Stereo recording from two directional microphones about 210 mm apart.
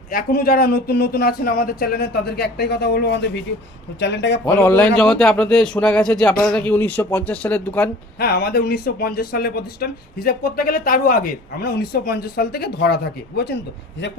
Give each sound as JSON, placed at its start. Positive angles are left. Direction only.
{"t": 0.1, "sound": "speech", "side_deg": 45}
{"t": 4.4, "sound": "a man's voice", "side_deg": 10}
{"t": 8.2, "sound": "speech", "side_deg": 45}